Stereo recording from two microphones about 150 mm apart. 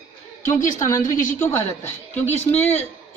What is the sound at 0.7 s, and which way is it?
Speech, 20° left (ahead or behind).